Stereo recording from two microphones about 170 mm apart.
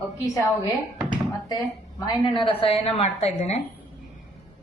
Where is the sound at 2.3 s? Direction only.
30° left (ahead or behind).